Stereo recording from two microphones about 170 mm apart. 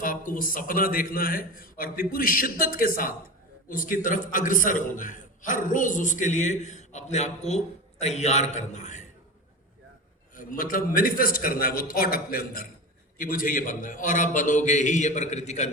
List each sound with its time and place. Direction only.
0.3 s a man's voice: 55° left (ahead or behind)
10.3 s a man's voice: 55° left (ahead or behind)